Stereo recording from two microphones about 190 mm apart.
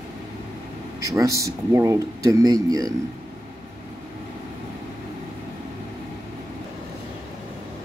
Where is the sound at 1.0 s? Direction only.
15° right (ahead or behind).